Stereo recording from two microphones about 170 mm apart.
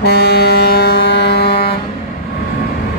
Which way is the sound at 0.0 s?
70° left (ahead or behind).